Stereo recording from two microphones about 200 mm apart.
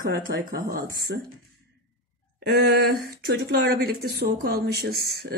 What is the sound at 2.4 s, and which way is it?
Speech, 55° right (ahead or behind).